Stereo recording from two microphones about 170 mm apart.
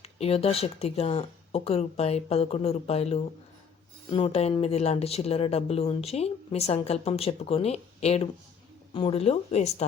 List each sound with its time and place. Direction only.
0.0 s speech: 35° left (ahead or behind)